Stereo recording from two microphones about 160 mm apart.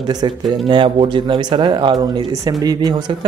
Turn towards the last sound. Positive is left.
turn(degrees=-25)  # may be behind; listen again after turning